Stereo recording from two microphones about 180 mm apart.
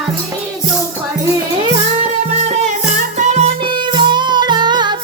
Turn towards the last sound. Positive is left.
turn(degrees=-25)  # may be behind; listen again after turning